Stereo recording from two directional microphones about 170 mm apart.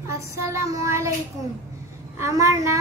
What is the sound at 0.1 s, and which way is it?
Child singing, 15° right (ahead or behind).